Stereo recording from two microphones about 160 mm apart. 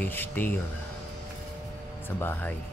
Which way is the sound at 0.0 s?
10° left (ahead or behind).